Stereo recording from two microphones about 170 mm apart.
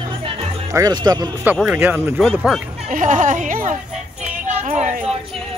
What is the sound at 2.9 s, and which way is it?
Speech, 50° right (ahead or behind).